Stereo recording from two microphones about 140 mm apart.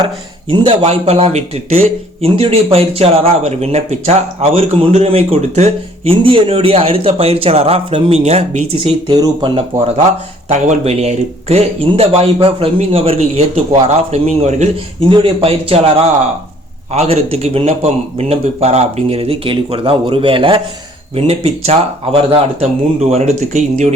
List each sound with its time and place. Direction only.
0.0 s a man's voice: 35° right (ahead or behind)
10.5 s a man's voice: 55° right (ahead or behind)
15.1 s a man's voice: 40° right (ahead or behind)
23.0 s a man's voice: 50° right (ahead or behind)